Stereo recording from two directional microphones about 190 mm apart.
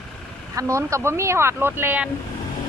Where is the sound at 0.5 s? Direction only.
15° right (ahead or behind).